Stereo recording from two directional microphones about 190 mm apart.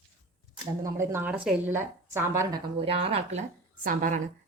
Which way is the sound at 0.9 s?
15° right (ahead or behind).